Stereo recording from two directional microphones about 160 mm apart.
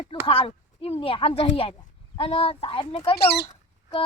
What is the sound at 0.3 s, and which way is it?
Speech, 35° left (ahead or behind).